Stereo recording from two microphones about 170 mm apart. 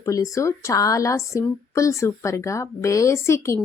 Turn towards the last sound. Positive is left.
turn(degrees=15)  # may be behind; listen again after turning